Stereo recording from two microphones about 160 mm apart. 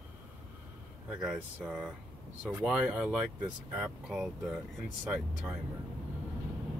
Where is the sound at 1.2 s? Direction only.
5° right (ahead or behind).